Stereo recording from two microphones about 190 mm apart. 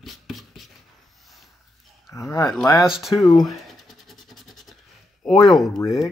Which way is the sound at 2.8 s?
Centre (ahead or behind).